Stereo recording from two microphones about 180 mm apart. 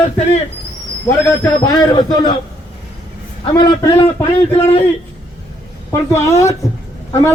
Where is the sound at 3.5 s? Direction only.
25° left (ahead or behind).